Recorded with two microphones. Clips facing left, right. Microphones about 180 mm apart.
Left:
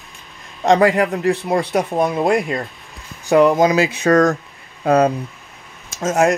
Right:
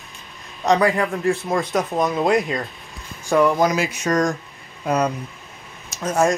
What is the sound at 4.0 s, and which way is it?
Speech, 60° left (ahead or behind).